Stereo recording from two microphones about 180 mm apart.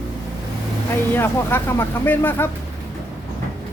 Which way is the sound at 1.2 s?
15° left (ahead or behind).